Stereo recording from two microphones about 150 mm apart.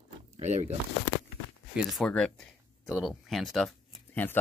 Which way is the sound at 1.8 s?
Centre (ahead or behind).